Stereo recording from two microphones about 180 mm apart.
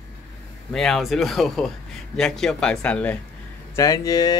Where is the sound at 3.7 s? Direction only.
20° left (ahead or behind).